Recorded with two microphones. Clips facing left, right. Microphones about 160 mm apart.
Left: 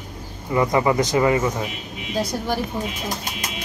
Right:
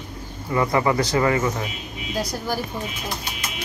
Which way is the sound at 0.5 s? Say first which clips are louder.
Left 2 dB; 20° left (ahead or behind).